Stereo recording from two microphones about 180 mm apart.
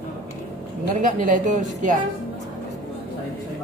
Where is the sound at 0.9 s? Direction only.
45° right (ahead or behind).